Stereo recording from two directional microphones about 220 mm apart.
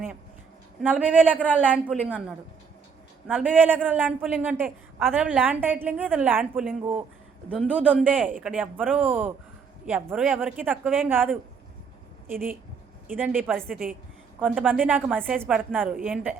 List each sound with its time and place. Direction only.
0.8 s a woman's voice: 5° right (ahead or behind)
3.2 s a woman's voice: 5° right (ahead or behind)
13.1 s speech: 5° right (ahead or behind)
13.6 s a woman's voice: 40° right (ahead or behind)
14.3 s speech: 5° right (ahead or behind)